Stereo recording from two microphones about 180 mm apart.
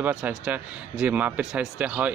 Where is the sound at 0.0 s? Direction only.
5° right (ahead or behind).